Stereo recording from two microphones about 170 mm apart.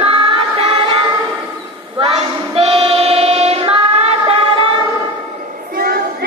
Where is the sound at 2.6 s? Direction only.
35° right (ahead or behind).